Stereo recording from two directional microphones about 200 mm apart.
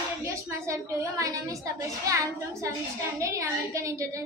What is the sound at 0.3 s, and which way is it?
A woman's voice, 15° right (ahead or behind).